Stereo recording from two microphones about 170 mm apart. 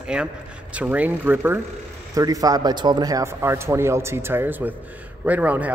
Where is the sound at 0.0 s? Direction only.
5° right (ahead or behind).